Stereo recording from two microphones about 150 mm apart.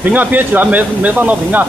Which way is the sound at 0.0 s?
10° right (ahead or behind).